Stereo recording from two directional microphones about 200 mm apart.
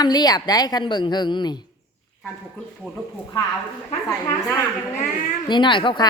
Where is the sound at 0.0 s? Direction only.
20° left (ahead or behind).